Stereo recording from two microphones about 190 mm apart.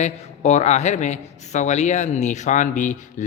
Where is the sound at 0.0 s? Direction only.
35° left (ahead or behind).